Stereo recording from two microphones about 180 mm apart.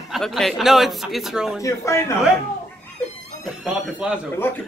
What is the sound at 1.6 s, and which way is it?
Speech, 15° left (ahead or behind).